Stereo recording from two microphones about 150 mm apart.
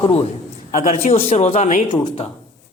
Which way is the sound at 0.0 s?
40° left (ahead or behind).